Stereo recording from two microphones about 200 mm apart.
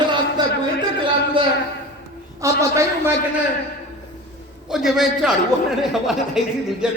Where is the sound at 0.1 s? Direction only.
20° right (ahead or behind).